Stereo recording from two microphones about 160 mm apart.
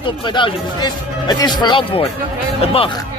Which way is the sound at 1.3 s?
25° left (ahead or behind).